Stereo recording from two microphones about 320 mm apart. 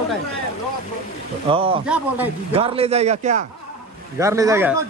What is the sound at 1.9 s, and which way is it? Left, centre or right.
Speech, centre.